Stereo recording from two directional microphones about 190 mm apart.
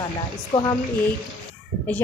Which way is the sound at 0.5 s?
30° left (ahead or behind).